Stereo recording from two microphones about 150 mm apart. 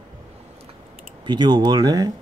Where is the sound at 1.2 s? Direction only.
30° right (ahead or behind).